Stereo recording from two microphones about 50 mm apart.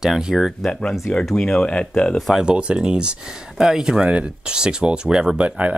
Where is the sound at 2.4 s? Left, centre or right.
Right.